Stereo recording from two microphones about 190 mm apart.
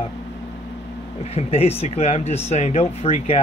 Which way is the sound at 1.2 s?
30° left (ahead or behind).